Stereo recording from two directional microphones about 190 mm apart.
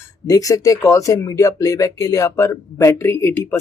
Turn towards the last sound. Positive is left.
turn(degrees=10)  # may be behind; listen again after turning